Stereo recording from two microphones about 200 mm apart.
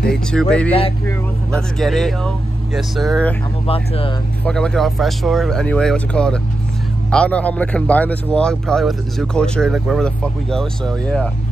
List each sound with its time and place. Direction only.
0.1 s speech: 5° left (ahead or behind)
3.6 s speech: 30° left (ahead or behind)
4.5 s speech: 5° left (ahead or behind)